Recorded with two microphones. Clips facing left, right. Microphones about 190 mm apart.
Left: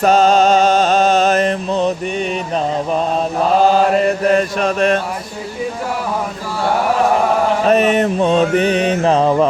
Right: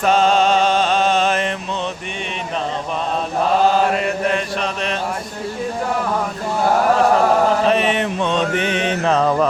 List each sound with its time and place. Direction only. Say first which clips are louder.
0.0 s music: left 4 dB; 40° left (ahead or behind)
4.3 s chant: left 7 dB; 45° left (ahead or behind)
7.7 s mantra: left 5 dB; 45° left (ahead or behind)